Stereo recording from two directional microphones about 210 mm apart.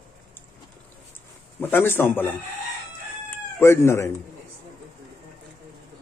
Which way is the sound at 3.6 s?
10° left (ahead or behind).